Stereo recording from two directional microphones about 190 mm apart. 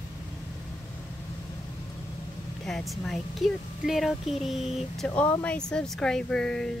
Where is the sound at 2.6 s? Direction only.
Centre (ahead or behind).